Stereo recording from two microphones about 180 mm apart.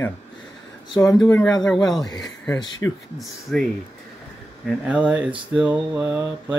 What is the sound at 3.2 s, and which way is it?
Speech, centre (ahead or behind).